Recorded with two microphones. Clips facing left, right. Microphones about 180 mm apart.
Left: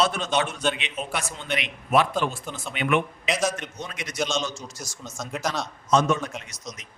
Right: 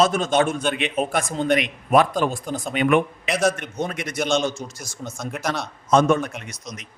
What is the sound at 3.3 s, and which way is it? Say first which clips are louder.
A man's voice: right 4 dB; 60° right (ahead or behind).